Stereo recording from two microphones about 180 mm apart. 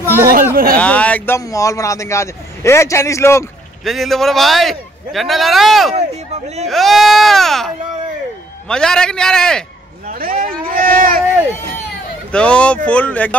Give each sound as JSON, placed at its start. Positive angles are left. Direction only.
{"t": 0.2, "sound": "speech", "side_deg": -50}
{"t": 0.7, "sound": "speech", "side_deg": 5}
{"t": 3.8, "sound": "a man's voice", "side_deg": 0}
{"t": 10.0, "sound": "speech", "side_deg": -55}
{"t": 12.3, "sound": "speech", "side_deg": 5}